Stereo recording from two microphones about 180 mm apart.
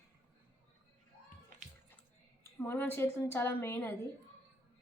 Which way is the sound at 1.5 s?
45° right (ahead or behind).